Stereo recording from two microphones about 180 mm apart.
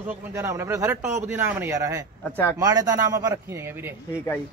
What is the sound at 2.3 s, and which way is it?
Speech, 10° left (ahead or behind).